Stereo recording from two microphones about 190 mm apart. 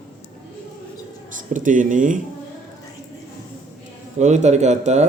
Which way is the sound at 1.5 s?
45° right (ahead or behind).